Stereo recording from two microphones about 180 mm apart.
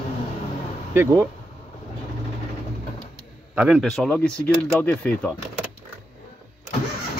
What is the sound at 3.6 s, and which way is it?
Speech, 5° right (ahead or behind).